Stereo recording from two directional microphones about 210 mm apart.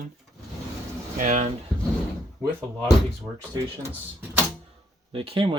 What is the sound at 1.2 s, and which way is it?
Speech, 35° right (ahead or behind).